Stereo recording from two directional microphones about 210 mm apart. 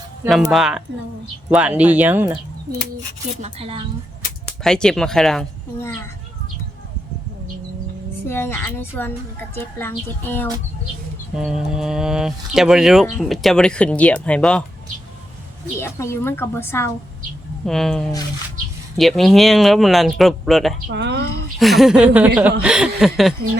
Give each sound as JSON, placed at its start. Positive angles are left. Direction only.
{"t": 0.3, "sound": "speech", "side_deg": 0}
{"t": 3.4, "sound": "a woman's voice", "side_deg": -25}
{"t": 4.6, "sound": "speech", "side_deg": 5}
{"t": 8.3, "sound": "a woman's voice", "side_deg": 10}
{"t": 11.3, "sound": "speech", "side_deg": 0}
{"t": 15.8, "sound": "a woman's voice", "side_deg": 10}
{"t": 20.8, "sound": "speech", "side_deg": -55}
{"t": 21.6, "sound": "speech", "side_deg": 0}